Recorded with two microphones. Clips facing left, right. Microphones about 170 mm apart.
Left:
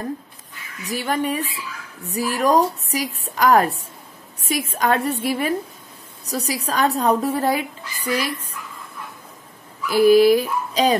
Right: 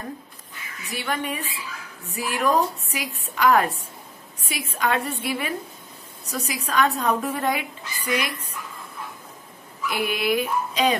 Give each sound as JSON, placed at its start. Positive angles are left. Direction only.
{"t": 0.8, "sound": "a woman's voice", "side_deg": 40}
{"t": 9.8, "sound": "a woman's voice", "side_deg": 35}